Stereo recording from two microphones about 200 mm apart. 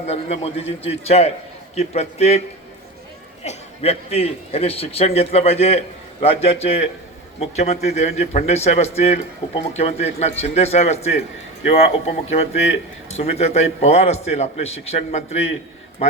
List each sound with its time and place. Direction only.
0.1 s a man's voice: 30° left (ahead or behind)
3.4 s a man's voice: 30° left (ahead or behind)